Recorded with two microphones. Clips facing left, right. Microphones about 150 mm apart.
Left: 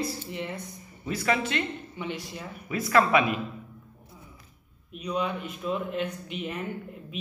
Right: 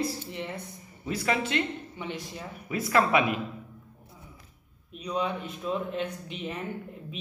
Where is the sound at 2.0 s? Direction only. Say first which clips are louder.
Left 3 dB; 35° right (ahead or behind).